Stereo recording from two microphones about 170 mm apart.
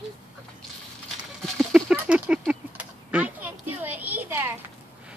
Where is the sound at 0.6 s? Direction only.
Centre (ahead or behind).